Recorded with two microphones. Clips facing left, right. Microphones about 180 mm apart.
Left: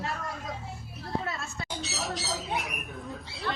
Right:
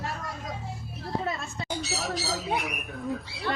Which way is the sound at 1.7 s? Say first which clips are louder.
Right 4 dB; centre (ahead or behind).